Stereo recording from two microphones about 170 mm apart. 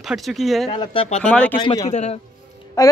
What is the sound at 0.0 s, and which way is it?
Speech, centre (ahead or behind).